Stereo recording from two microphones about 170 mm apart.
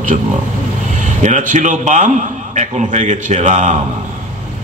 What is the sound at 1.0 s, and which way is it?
A man's voice, 45° right (ahead or behind).